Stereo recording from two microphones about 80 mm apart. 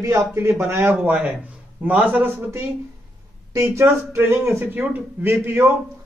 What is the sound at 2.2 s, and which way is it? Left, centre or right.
Speech, right.